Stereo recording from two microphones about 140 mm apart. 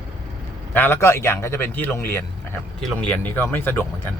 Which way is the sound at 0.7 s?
15° left (ahead or behind).